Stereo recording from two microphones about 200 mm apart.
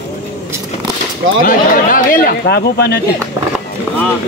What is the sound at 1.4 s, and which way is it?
Speech, 45° left (ahead or behind).